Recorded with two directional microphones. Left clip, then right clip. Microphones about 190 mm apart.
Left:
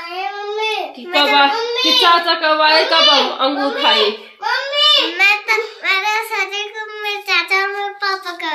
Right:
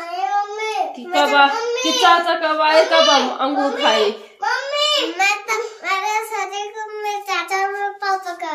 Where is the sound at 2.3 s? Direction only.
20° left (ahead or behind).